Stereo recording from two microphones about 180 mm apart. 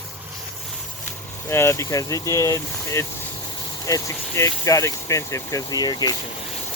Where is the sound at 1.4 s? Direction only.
15° left (ahead or behind).